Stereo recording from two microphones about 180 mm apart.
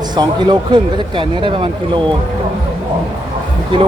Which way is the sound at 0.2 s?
25° right (ahead or behind).